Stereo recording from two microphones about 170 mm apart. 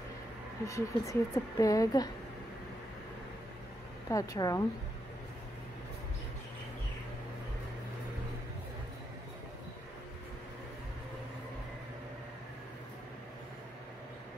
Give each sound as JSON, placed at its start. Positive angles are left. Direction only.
{"t": 0.7, "sound": "a woman's voice", "side_deg": 20}
{"t": 4.1, "sound": "a woman's voice", "side_deg": 20}